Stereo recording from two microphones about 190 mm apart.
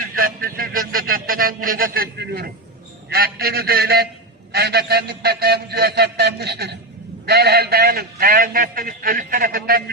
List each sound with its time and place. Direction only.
0.2 s a man's voice: 50° right (ahead or behind)
3.1 s a sound: 55° right (ahead or behind)
7.3 s a man's voice: 55° right (ahead or behind)